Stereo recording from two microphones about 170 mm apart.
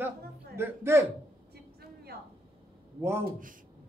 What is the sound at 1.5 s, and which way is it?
Vehicle, 70° right (ahead or behind).